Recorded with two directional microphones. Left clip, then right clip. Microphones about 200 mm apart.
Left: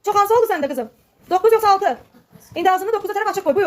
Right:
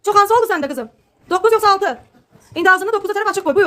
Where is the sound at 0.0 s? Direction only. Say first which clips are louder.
Right 3 dB; 20° right (ahead or behind).